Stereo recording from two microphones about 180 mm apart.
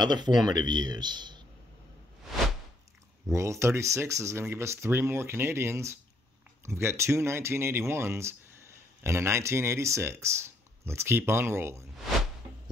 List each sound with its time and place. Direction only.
0.0 s speech: 25° right (ahead or behind)
3.3 s speech: 15° right (ahead or behind)